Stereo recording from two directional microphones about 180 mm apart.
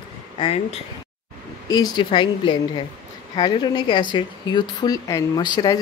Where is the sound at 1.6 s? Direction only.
25° left (ahead or behind).